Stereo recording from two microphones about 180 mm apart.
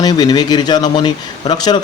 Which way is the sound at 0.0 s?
20° left (ahead or behind).